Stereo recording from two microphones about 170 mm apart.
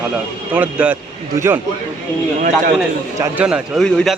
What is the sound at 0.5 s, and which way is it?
Speech, 10° right (ahead or behind).